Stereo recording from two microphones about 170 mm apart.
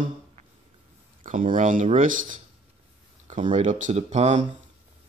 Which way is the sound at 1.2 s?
50° right (ahead or behind).